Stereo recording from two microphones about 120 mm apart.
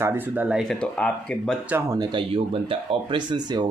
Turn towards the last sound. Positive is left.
turn(degrees=-35)  # may be behind; listen again after turning